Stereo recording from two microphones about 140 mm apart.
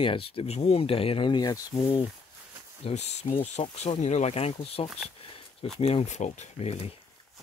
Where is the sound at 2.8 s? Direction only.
50° left (ahead or behind).